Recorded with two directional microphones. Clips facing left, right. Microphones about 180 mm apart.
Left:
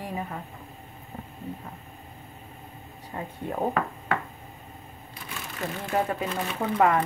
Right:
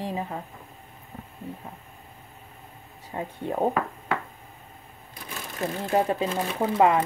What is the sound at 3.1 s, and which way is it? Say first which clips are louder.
Speech: right 3 dB; 20° right (ahead or behind).